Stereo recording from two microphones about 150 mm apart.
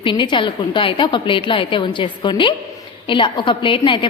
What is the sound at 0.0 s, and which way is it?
A woman's voice, 30° left (ahead or behind).